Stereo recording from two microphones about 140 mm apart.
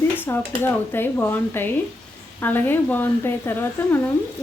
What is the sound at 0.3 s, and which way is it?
Speech, 15° left (ahead or behind).